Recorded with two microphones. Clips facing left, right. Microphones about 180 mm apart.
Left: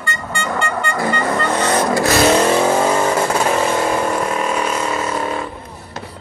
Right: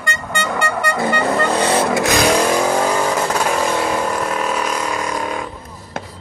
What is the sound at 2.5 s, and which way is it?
Vehicle, 5° left (ahead or behind).